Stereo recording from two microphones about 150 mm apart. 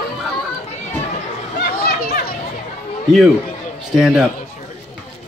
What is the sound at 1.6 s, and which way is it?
Children playing, 85° left.